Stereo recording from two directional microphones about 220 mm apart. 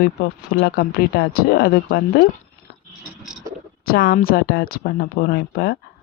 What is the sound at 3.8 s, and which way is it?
Speech, 45° left (ahead or behind).